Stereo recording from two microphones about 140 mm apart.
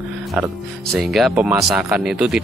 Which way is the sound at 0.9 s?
Centre (ahead or behind).